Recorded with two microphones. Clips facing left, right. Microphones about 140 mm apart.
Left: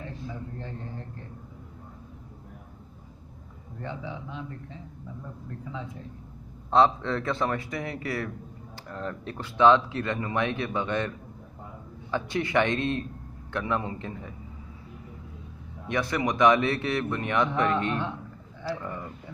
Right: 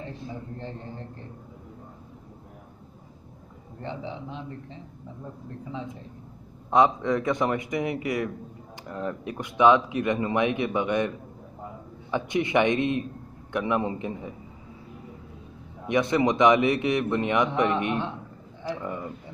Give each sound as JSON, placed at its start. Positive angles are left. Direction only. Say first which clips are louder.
{"t": 3.8, "sound": "a man's voice", "louder": "right 2 dB", "side_deg": -25}
{"t": 6.7, "sound": "a man's voice", "louder": "right 1 dB", "side_deg": -15}
{"t": 15.9, "sound": "a man's voice", "louder": "right 5 dB", "side_deg": -20}